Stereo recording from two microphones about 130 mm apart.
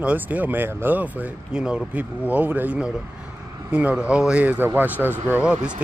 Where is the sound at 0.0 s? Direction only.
10° right (ahead or behind).